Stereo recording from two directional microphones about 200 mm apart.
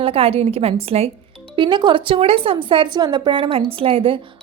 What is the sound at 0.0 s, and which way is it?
A woman's voice, 30° right (ahead or behind).